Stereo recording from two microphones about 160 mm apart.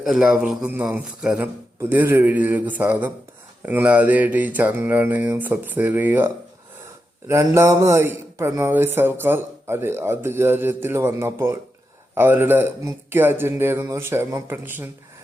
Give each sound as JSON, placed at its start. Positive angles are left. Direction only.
{"t": 0.0, "sound": "a man's voice", "side_deg": 0}